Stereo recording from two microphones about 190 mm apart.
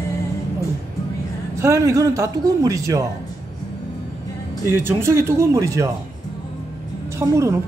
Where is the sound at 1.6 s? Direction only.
15° right (ahead or behind).